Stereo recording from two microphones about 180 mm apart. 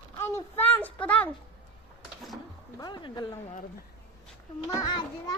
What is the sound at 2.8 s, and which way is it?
Speech, 25° left (ahead or behind).